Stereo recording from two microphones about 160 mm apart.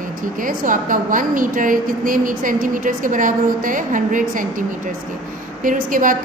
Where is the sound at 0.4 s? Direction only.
55° right (ahead or behind).